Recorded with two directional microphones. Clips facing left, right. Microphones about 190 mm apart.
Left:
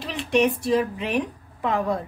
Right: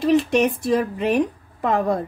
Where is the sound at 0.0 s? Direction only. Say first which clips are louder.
Right 5 dB; 45° right (ahead or behind).